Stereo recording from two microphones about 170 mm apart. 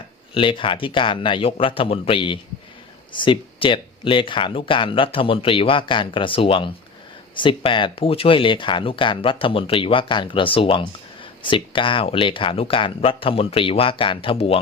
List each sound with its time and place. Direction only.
0.3 s speech: 30° left (ahead or behind)